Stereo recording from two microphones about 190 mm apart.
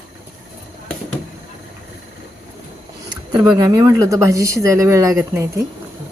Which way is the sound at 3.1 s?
20° right (ahead or behind).